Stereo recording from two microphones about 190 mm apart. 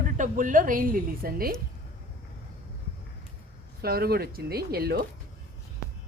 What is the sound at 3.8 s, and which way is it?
Speech, 55° right (ahead or behind).